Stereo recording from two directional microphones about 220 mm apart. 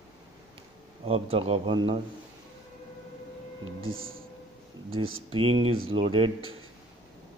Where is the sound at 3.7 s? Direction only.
65° right (ahead or behind).